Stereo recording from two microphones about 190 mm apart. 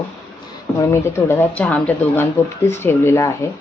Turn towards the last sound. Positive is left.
turn(degrees=15)  # may be behind; listen again after turning